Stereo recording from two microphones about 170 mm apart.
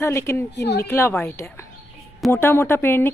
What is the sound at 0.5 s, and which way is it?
Speech, 75° left (ahead or behind).